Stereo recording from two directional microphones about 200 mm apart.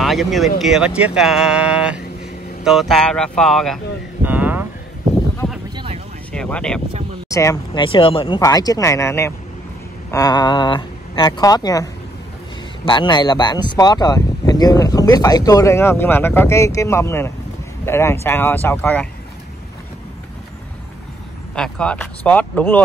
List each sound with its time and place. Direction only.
0.0 s speech: centre (ahead or behind)
4.2 s a sound: 10° right (ahead or behind)
5.4 s a sound: 5° left (ahead or behind)
6.3 s vehicle: 5° left (ahead or behind)
7.2 s speech: 15° left (ahead or behind)
21.5 s speech: 5° left (ahead or behind)